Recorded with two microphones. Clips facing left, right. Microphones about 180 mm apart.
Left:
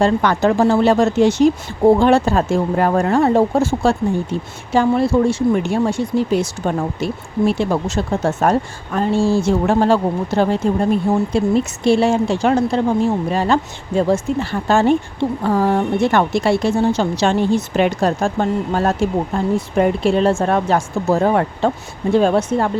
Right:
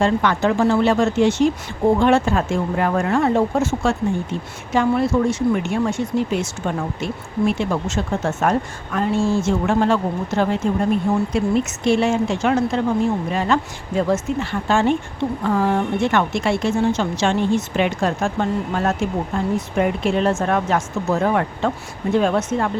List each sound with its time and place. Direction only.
0.0 s speech: 40° left (ahead or behind)